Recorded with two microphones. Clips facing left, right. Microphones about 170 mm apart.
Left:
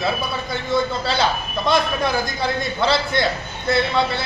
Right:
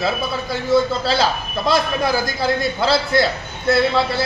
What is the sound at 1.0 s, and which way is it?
A man's voice, centre (ahead or behind).